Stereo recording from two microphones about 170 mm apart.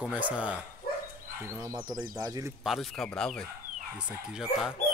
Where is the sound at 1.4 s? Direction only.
20° right (ahead or behind).